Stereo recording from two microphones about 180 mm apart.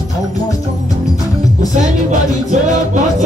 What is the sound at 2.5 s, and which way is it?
Music, 45° right (ahead or behind).